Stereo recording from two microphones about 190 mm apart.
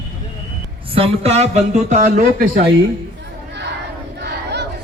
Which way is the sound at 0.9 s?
30° right (ahead or behind).